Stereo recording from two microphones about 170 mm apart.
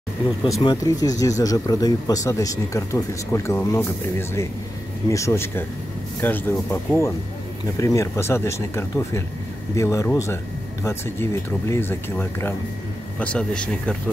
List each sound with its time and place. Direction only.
0.6 s speech: 25° left (ahead or behind); by 13.9 s 5° left (ahead or behind)